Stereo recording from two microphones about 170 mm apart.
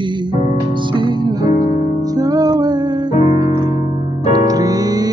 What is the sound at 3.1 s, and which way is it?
Music, 40° left (ahead or behind).